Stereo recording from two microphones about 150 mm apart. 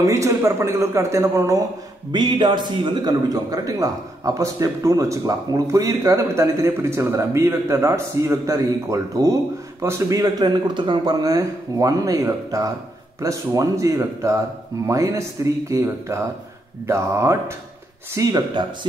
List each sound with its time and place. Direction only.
0.0 s a man's voice: 20° right (ahead or behind)
2.1 s a man's voice: 30° right (ahead or behind)